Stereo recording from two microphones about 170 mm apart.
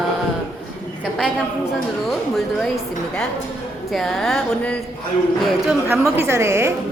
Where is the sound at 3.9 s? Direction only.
Centre (ahead or behind).